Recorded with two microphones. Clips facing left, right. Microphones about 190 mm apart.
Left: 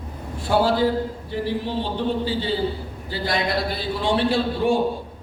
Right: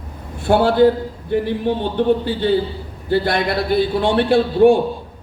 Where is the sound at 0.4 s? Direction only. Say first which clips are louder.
Right 6 dB; 55° right (ahead or behind).